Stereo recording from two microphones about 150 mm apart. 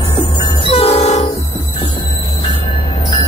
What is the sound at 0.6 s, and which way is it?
Train, 40° left (ahead or behind).